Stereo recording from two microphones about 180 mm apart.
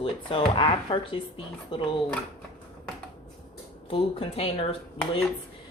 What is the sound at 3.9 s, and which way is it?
Speech, 30° left (ahead or behind).